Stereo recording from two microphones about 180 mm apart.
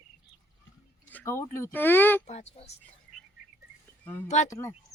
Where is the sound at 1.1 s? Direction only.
15° left (ahead or behind).